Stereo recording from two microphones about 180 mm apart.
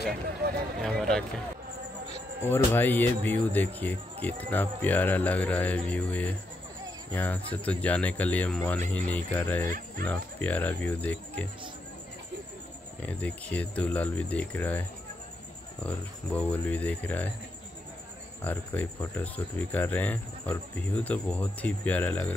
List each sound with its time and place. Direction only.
0.8 s speech: 5° left (ahead or behind)
2.5 s speech: 10° left (ahead or behind)
9.7 s speech: 50° right (ahead or behind)
10.0 s speech: 10° left (ahead or behind)
13.0 s speech: 10° left (ahead or behind)
15.8 s speech: 10° left (ahead or behind)
18.4 s speech: 10° left (ahead or behind)